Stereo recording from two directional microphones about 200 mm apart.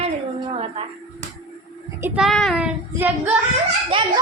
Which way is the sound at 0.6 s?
30° right (ahead or behind).